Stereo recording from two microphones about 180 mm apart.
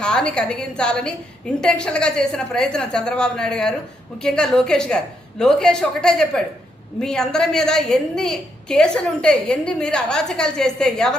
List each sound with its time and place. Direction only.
0.0 s a woman's voice: 5° left (ahead or behind)